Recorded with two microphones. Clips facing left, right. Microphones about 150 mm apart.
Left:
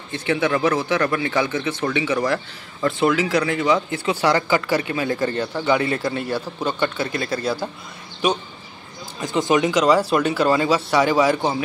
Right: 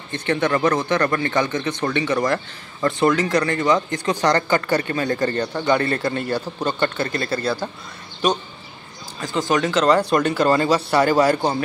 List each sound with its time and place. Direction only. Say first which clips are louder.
0.1 s speech: even; 5° left (ahead or behind)